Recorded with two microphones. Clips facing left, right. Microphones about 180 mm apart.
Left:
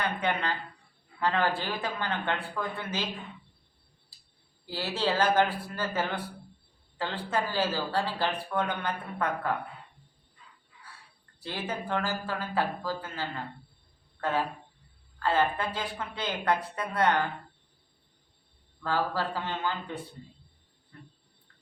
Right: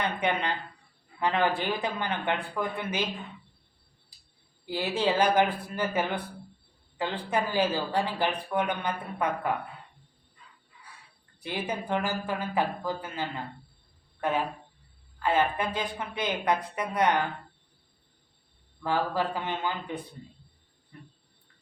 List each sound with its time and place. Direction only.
0.0 s speech: 20° right (ahead or behind)
4.6 s speech: 15° right (ahead or behind)
11.3 s speech: 15° right (ahead or behind)
14.2 s a sound: 15° right (ahead or behind)
15.2 s speech: 15° right (ahead or behind)
18.8 s speech: 15° right (ahead or behind)